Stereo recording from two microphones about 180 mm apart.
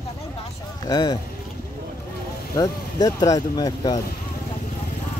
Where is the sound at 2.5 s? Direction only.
20° left (ahead or behind).